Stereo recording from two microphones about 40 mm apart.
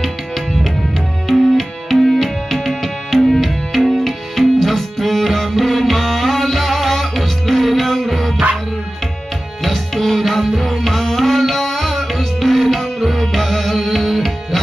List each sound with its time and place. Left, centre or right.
1.2 s music: centre
9.6 s tabla: centre